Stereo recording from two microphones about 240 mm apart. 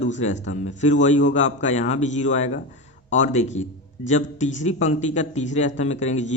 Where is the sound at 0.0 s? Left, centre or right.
Left.